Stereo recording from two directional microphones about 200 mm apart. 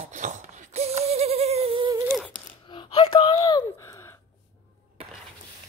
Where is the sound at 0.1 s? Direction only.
40° right (ahead or behind).